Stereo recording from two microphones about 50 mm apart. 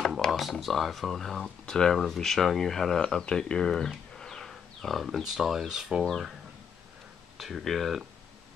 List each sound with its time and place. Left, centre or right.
0.3 s speech: centre
7.3 s speech: centre